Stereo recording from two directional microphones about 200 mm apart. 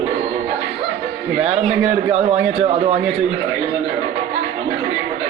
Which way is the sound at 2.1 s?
30° right (ahead or behind).